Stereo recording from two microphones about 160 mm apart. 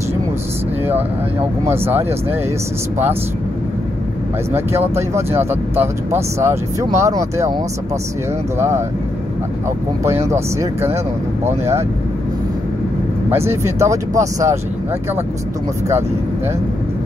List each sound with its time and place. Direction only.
1.7 s speech: 15° right (ahead or behind)
4.6 s speech: 15° right (ahead or behind)
8.5 s speech: 15° right (ahead or behind)
10.2 s speech: 15° right (ahead or behind)
13.3 s speech: 15° right (ahead or behind)